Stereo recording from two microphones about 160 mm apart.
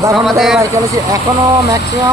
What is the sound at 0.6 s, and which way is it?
Speech, 20° right (ahead or behind).